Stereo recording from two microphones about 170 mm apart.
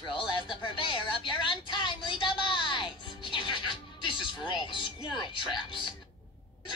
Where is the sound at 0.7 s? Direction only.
30° left (ahead or behind).